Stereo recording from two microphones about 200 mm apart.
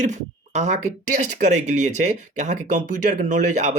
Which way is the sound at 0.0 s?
35° right (ahead or behind).